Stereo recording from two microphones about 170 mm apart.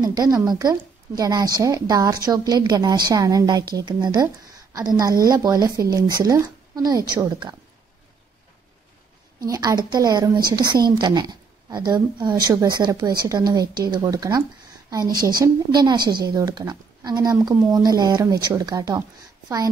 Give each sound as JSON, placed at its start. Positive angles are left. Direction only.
{"t": 0.0, "sound": "speech", "side_deg": -20}
{"t": 9.4, "sound": "speech", "side_deg": -20}